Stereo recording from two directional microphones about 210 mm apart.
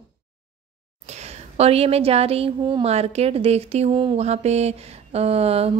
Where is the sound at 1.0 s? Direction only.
30° right (ahead or behind).